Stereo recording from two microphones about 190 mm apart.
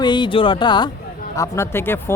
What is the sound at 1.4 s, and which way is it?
Speech, 15° left (ahead or behind).